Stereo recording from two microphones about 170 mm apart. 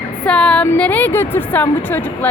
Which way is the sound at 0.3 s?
5° left (ahead or behind).